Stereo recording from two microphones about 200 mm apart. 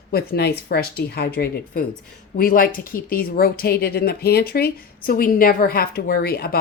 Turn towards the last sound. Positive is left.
turn(degrees=50)  # may be behind; listen again after turning